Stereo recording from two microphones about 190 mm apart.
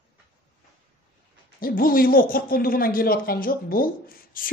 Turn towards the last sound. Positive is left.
turn(degrees=50)  # may be behind; listen again after turning